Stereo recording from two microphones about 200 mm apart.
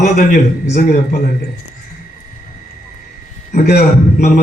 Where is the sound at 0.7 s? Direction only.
45° left (ahead or behind).